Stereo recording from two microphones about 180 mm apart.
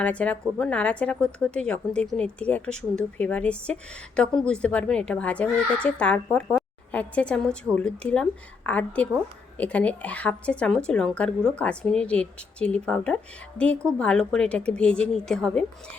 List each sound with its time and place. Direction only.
0.0 s a woman's voice: 5° left (ahead or behind)